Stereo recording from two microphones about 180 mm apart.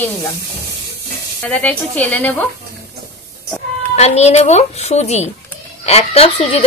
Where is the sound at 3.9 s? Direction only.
35° left (ahead or behind).